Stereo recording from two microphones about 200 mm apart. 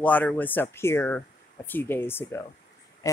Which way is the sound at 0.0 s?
10° left (ahead or behind).